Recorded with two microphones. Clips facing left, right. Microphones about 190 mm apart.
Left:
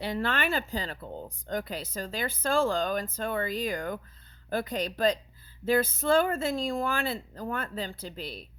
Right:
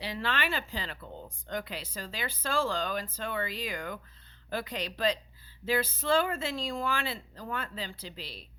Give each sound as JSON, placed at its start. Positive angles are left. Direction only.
{"t": 0.0, "sound": "speech", "side_deg": 50}